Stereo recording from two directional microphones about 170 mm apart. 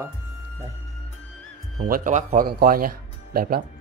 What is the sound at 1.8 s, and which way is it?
Speech, 55° right (ahead or behind).